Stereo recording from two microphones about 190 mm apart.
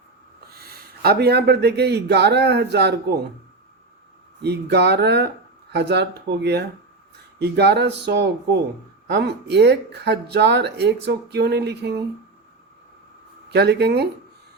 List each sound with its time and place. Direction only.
0.6 s speech: 55° right (ahead or behind)
4.4 s speech: 60° right (ahead or behind)
13.5 s speech: 60° right (ahead or behind)